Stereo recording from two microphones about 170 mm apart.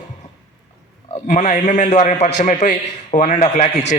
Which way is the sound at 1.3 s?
45° left (ahead or behind).